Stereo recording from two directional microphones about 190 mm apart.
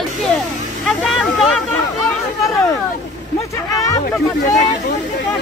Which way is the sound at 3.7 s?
20° left (ahead or behind).